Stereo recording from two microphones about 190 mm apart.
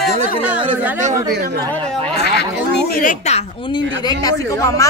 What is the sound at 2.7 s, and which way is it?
Speech, 55° left (ahead or behind).